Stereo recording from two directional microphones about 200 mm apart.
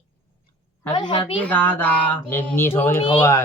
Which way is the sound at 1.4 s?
5° left (ahead or behind).